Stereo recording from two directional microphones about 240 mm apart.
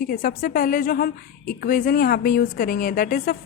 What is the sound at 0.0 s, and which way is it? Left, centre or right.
A woman's voice, left.